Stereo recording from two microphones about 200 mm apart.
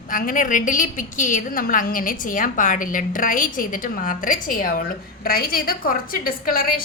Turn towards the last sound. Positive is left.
turn(degrees=45)  # may be behind; listen again after turning